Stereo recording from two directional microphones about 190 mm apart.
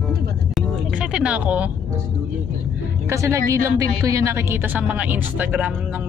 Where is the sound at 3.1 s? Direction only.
15° right (ahead or behind).